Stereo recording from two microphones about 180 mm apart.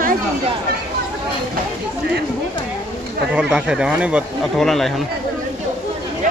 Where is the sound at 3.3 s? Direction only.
5° right (ahead or behind).